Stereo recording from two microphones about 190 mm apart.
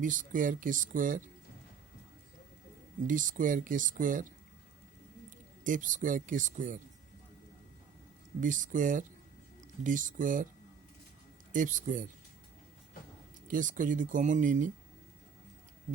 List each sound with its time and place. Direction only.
0.0 s speech: 45° right (ahead or behind)
3.1 s speech: 45° right (ahead or behind)
5.6 s speech: 45° right (ahead or behind)
8.4 s speech: 45° right (ahead or behind)
11.5 s speech: 45° right (ahead or behind)
13.5 s speech: 45° right (ahead or behind)